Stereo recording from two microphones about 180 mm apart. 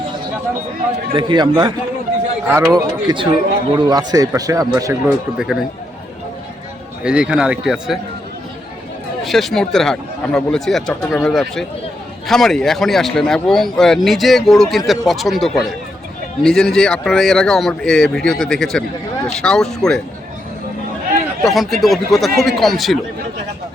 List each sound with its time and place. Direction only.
1.1 s speech: 25° right (ahead or behind)
5.4 s a man's voice: centre (ahead or behind)
7.0 s a man's voice: 5° right (ahead or behind)
9.2 s a man's voice: centre (ahead or behind)
21.4 s a man's voice: centre (ahead or behind)